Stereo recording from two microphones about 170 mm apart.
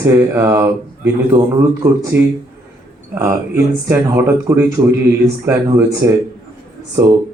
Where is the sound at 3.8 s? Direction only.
15° right (ahead or behind).